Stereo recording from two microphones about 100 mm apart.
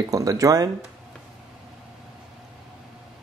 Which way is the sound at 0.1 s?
35° right (ahead or behind).